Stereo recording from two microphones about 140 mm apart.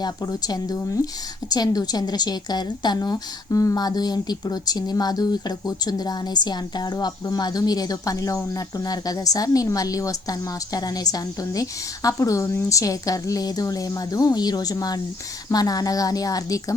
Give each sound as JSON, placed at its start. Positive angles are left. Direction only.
{"t": 0.0, "sound": "a woman's voice", "side_deg": 30}